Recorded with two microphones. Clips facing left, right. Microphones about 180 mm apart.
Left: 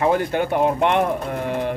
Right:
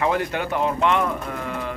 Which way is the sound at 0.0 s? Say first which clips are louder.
Left 4 dB; 40° left (ahead or behind).